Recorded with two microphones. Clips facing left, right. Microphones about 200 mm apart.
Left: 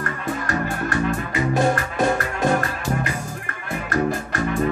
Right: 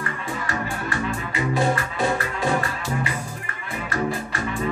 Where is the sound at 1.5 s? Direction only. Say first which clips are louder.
Left 2 dB; 45° left (ahead or behind).